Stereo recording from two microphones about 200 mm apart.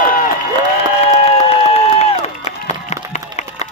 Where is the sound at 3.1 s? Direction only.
35° left (ahead or behind).